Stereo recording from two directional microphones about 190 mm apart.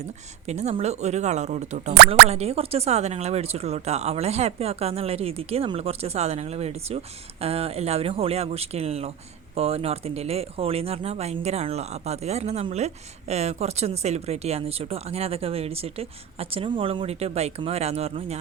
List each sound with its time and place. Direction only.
0.4 s speech: 35° right (ahead or behind)